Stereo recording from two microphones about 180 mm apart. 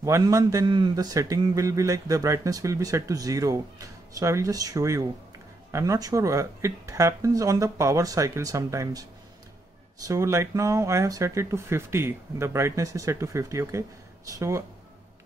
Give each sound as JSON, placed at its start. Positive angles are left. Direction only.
{"t": 0.0, "sound": "a man's voice", "side_deg": -20}
{"t": 10.0, "sound": "speech", "side_deg": -15}